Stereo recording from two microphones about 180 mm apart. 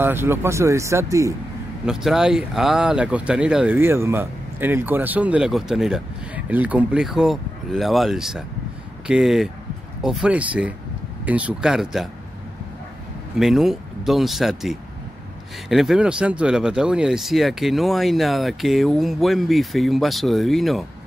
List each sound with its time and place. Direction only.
0.0 s speech: 15° right (ahead or behind)
1.9 s speech: 5° right (ahead or behind)
13.4 s speech: centre (ahead or behind)